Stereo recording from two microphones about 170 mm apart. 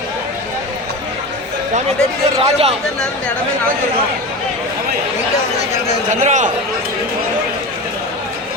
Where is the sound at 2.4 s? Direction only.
35° right (ahead or behind).